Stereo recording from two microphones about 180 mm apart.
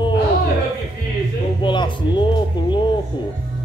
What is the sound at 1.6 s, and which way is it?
Music, 25° left (ahead or behind).